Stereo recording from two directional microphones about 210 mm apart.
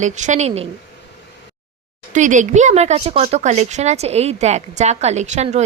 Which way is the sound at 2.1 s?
35° right (ahead or behind).